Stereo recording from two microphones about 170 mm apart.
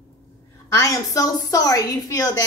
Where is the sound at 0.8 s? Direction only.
20° left (ahead or behind).